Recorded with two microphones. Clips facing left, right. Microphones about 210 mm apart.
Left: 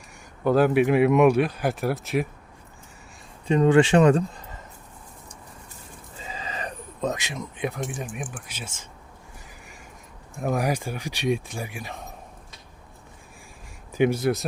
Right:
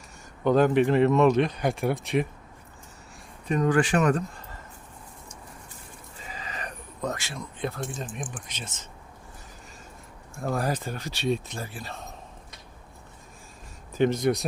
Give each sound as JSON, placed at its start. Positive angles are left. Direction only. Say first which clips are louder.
{"t": 0.4, "sound": "speech", "louder": "left 1 dB", "side_deg": 5}
{"t": 3.4, "sound": "speech", "louder": "left 5 dB", "side_deg": 25}
{"t": 6.2, "sound": "speech", "louder": "left 4 dB", "side_deg": 25}
{"t": 10.3, "sound": "speech", "louder": "left 3 dB", "side_deg": 15}
{"t": 13.9, "sound": "speech", "louder": "left 1 dB", "side_deg": 10}